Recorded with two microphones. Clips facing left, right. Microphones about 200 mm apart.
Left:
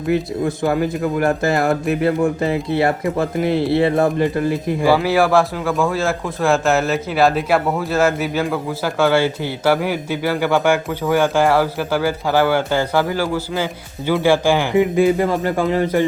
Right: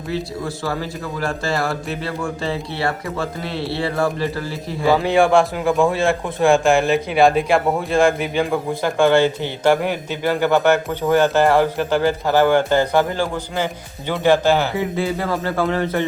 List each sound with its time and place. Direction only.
0.4 s speech: 20° left (ahead or behind)
2.0 s speech: 20° left (ahead or behind)
4.9 s a man's voice: 5° left (ahead or behind)